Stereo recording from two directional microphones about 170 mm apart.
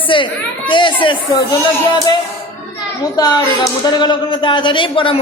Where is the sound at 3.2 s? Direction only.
25° left (ahead or behind).